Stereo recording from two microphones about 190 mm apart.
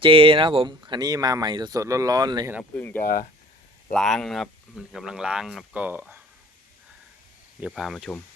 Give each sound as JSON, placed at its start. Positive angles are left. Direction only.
{"t": 0.0, "sound": "speech", "side_deg": -25}
{"t": 2.7, "sound": "speech", "side_deg": 10}
{"t": 3.0, "sound": "speech", "side_deg": 50}
{"t": 3.9, "sound": "speech", "side_deg": 0}
{"t": 7.6, "sound": "speech", "side_deg": 0}